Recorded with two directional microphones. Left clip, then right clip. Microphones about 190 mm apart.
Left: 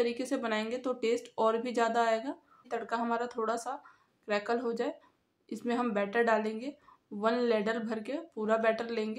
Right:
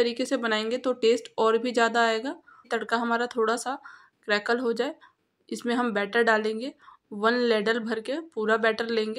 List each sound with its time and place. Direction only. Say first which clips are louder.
0.0 s speech: right 6 dB; 20° right (ahead or behind)